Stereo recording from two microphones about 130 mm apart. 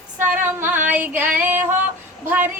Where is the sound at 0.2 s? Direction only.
15° right (ahead or behind).